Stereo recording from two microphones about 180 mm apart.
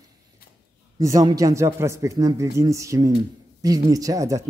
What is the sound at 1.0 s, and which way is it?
Speech, 20° right (ahead or behind).